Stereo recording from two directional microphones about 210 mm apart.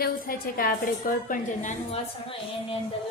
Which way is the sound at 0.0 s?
45° left (ahead or behind).